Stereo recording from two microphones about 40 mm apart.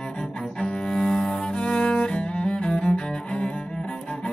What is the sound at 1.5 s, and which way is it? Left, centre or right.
Cello, left.